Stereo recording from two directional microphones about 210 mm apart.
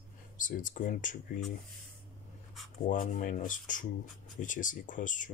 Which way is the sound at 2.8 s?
40° left (ahead or behind).